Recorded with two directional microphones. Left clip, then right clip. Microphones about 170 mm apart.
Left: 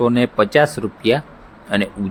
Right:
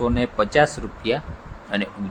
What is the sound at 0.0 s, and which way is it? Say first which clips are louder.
Speech: left 6 dB; 40° left (ahead or behind).